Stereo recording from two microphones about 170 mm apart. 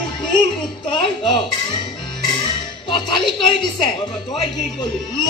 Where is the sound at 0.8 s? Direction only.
30° left (ahead or behind).